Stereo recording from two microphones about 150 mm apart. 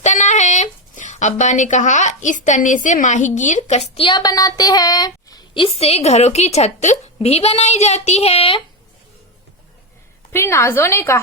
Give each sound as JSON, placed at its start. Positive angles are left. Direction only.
{"t": 0.0, "sound": "speech", "side_deg": 50}
{"t": 5.6, "sound": "a woman's voice", "side_deg": 45}
{"t": 10.3, "sound": "a woman's voice", "side_deg": 15}